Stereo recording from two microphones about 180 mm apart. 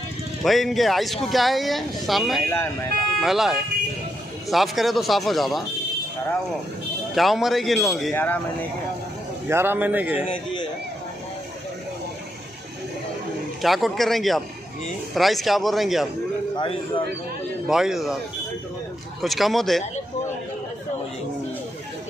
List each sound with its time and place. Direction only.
0.4 s speech: centre (ahead or behind)
7.2 s speech: centre (ahead or behind)
8.1 s speech: 10° left (ahead or behind)
9.5 s a man's voice: 10° right (ahead or behind)
10.2 s a man's voice: 25° left (ahead or behind)
13.6 s speech: centre (ahead or behind)
17.6 s speech: 5° right (ahead or behind)
19.2 s speech: centre (ahead or behind)